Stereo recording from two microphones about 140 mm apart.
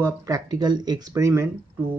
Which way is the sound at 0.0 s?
25° right (ahead or behind).